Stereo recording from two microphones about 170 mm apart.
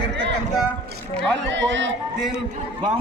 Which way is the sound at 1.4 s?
90° right.